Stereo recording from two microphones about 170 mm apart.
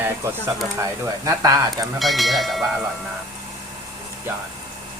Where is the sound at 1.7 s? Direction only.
Centre (ahead or behind).